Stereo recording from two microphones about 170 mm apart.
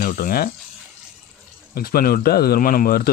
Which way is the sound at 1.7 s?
60° left (ahead or behind).